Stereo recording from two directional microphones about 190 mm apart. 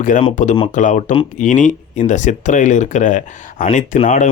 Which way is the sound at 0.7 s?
45° left (ahead or behind).